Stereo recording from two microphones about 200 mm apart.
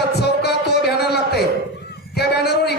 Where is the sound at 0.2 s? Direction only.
55° left (ahead or behind).